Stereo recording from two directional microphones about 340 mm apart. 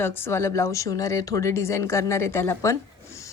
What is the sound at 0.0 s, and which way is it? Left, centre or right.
Speech, centre.